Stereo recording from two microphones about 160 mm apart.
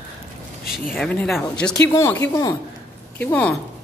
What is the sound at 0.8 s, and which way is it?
Speech, 5° left (ahead or behind).